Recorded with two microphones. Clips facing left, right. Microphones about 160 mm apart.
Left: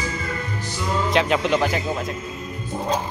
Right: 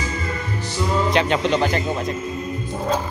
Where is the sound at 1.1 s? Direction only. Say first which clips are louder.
Left 2 dB; centre (ahead or behind).